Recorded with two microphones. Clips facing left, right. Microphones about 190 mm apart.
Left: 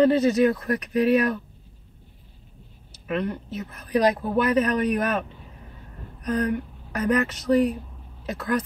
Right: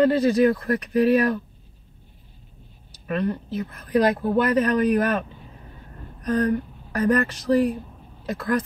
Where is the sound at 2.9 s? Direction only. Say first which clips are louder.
Right 2 dB; 35° right (ahead or behind).